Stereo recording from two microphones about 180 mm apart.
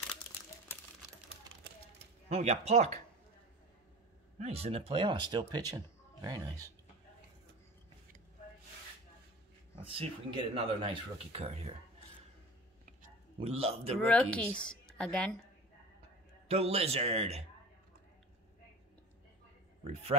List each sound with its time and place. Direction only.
2.2 s speech: 35° right (ahead or behind)
4.4 s speech: 35° right (ahead or behind); by 6.7 s 20° right (ahead or behind)
9.8 s speech: 30° right (ahead or behind)
13.4 s speech: 35° right (ahead or behind)
14.0 s speech: 5° left (ahead or behind)
16.4 s speech: 35° right (ahead or behind)